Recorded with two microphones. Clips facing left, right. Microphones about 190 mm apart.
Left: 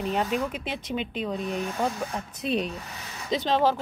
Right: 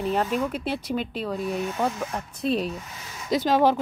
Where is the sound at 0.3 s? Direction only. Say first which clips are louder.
Right 3 dB; 40° right (ahead or behind).